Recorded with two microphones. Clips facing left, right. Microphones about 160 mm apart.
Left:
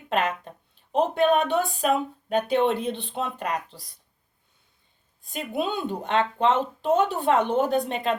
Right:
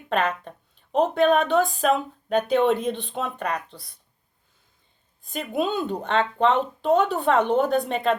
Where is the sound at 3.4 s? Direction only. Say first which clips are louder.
Right 1 dB; 40° left (ahead or behind).